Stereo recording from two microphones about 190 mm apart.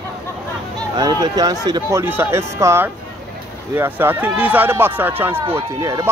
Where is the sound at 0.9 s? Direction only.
20° right (ahead or behind).